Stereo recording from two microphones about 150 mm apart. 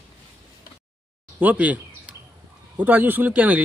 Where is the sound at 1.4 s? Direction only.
10° right (ahead or behind).